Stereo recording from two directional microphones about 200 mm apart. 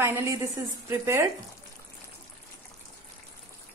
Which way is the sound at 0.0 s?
15° right (ahead or behind).